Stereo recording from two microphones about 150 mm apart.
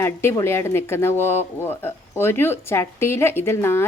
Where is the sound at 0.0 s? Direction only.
15° left (ahead or behind).